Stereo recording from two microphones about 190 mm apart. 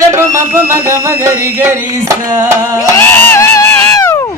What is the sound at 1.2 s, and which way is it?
Music, 15° right (ahead or behind).